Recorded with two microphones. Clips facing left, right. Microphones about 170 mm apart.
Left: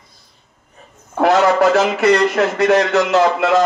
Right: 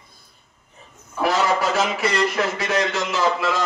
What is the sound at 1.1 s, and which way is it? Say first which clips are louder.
A man's voice: left 7 dB; 65° left (ahead or behind).